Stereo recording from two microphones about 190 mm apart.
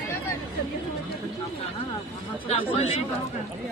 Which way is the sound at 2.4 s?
35° left (ahead or behind).